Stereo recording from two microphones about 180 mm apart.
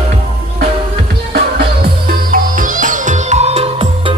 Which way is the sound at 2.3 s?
45° right (ahead or behind).